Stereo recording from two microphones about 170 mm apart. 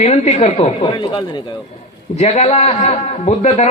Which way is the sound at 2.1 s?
40° left (ahead or behind).